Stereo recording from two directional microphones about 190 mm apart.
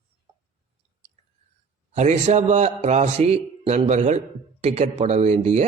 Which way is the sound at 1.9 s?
35° right (ahead or behind).